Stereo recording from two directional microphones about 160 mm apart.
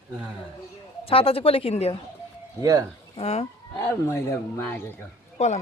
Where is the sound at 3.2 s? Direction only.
40° left (ahead or behind).